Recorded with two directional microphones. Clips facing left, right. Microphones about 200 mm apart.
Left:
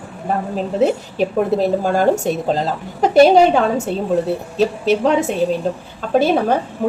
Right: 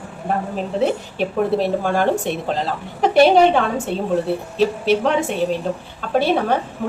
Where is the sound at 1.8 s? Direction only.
40° left (ahead or behind).